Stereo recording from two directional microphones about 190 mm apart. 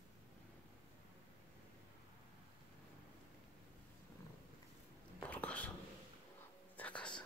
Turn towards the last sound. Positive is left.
turn(degrees=5)  # may be behind; listen again after turning